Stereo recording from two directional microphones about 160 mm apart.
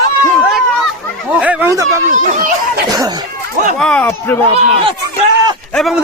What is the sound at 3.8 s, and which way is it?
Speech, 5° left (ahead or behind).